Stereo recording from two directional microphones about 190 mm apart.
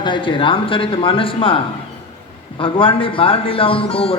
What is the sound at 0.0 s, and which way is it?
A man's voice, 25° left (ahead or behind).